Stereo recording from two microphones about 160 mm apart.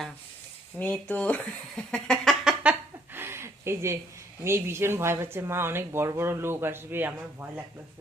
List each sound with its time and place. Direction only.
0.8 s speech: 10° left (ahead or behind)
3.2 s a sound: 15° right (ahead or behind)
4.4 s speech: 15° right (ahead or behind)